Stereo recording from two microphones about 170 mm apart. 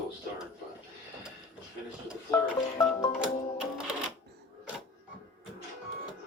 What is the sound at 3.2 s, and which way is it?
Music, 5° right (ahead or behind).